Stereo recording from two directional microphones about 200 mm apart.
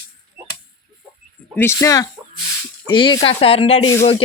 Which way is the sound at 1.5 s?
10° left (ahead or behind).